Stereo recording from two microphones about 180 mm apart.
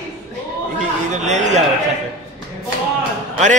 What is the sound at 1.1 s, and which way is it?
Speech, 40° right (ahead or behind).